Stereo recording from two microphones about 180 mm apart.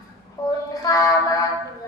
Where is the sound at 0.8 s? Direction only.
20° left (ahead or behind).